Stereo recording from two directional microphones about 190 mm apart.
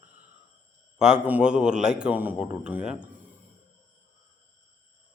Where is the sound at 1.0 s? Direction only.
5° right (ahead or behind).